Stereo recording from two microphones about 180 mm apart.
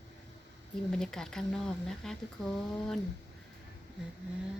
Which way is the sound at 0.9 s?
5° left (ahead or behind).